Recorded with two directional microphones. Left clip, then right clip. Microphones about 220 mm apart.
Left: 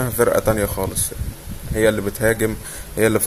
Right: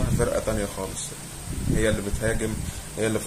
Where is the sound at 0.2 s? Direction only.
35° left (ahead or behind).